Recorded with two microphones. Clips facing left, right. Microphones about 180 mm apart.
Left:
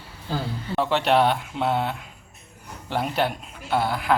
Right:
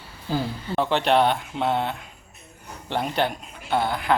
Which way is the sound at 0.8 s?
Centre (ahead or behind).